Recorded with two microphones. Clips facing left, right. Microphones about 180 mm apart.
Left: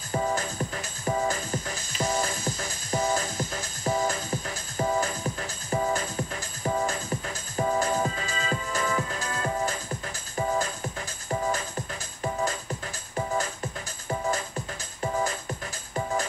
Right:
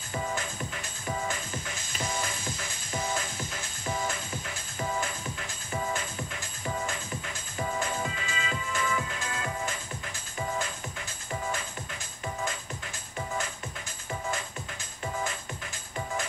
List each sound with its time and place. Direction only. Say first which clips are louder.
0.1 s music: left 6 dB; 40° left (ahead or behind)